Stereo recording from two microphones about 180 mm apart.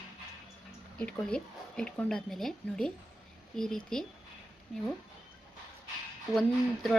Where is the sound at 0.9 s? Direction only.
5° left (ahead or behind).